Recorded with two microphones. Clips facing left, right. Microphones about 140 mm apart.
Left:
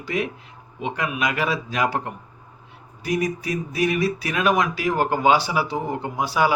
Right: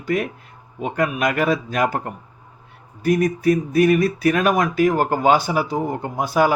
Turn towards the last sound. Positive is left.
turn(degrees=-50)  # may be behind; listen again after turning